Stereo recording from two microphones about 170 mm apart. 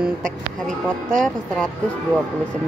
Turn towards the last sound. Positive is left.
turn(degrees=5)  # may be behind; listen again after turning